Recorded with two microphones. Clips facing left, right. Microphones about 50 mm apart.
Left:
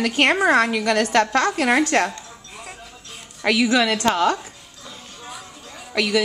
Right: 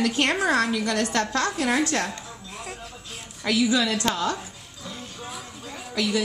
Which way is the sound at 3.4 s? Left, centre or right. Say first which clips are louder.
Left 4 dB; left.